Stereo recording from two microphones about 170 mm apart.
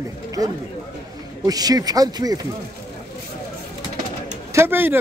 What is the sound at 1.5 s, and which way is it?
Speech, 20° right (ahead or behind).